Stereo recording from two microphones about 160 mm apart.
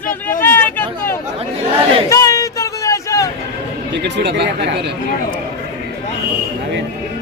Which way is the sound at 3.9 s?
90° right.